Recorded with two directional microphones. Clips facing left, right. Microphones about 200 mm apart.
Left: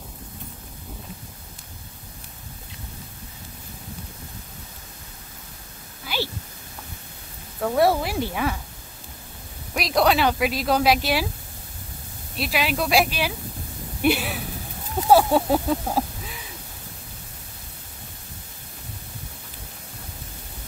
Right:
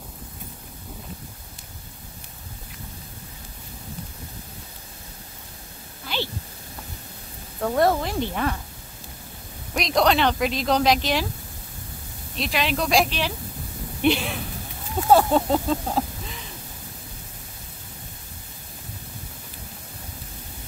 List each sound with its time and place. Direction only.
6.1 s a sound: 5° left (ahead or behind)
7.6 s speech: 5° left (ahead or behind)
9.8 s speech: 5° left (ahead or behind)
12.4 s speech: 5° left (ahead or behind)